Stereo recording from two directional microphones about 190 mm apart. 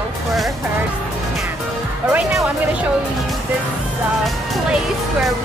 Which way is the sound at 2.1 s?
5° right (ahead or behind).